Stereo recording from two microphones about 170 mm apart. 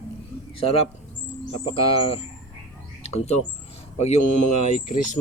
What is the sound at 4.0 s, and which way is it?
Speech, 40° left (ahead or behind).